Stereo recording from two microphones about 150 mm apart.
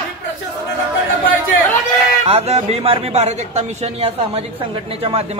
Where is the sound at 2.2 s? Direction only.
45° right (ahead or behind).